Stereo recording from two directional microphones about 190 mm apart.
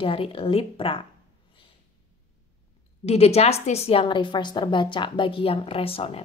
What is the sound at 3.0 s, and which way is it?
A woman's voice, 35° left (ahead or behind).